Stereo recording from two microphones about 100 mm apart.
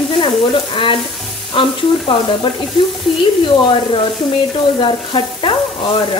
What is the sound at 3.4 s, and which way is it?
Frying, 55° left (ahead or behind).